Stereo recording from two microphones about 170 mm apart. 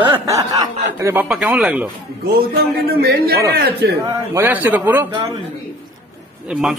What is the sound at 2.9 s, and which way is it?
Speech, 65° right (ahead or behind).